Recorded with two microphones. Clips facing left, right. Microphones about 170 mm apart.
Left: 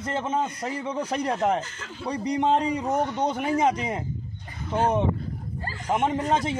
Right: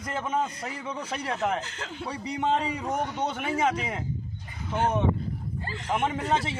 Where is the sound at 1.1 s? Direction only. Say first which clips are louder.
Left 4 dB; 40° left (ahead or behind).